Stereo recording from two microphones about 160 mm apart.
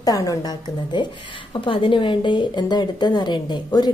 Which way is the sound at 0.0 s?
20° left (ahead or behind).